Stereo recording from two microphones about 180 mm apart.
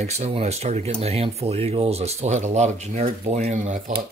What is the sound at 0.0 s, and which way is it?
Speech, 35° right (ahead or behind).